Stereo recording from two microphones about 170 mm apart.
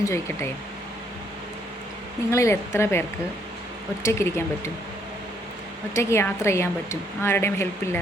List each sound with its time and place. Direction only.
0.0 s speech: 15° left (ahead or behind)
2.3 s speech: 15° left (ahead or behind)
4.0 s speech: 15° left (ahead or behind)
5.9 s speech: 15° left (ahead or behind)